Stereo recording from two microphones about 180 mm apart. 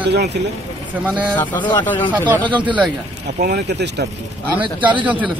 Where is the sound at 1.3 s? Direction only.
10° left (ahead or behind).